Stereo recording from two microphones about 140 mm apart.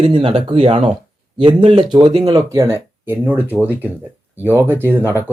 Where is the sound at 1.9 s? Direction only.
35° right (ahead or behind).